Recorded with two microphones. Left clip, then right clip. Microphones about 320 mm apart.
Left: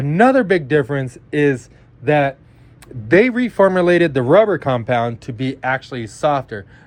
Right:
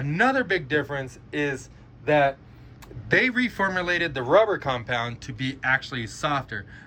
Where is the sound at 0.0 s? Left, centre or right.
Centre.